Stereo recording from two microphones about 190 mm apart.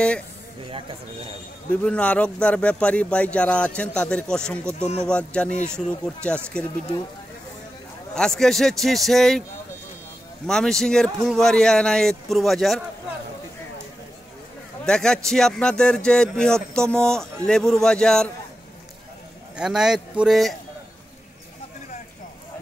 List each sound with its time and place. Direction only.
0.7 s speech: 25° right (ahead or behind)
1.7 s speech: 5° left (ahead or behind)
8.1 s speech: 5° left (ahead or behind)
10.4 s speech: 5° left (ahead or behind)
14.9 s speech: 5° left (ahead or behind)
19.5 s speech: 5° right (ahead or behind)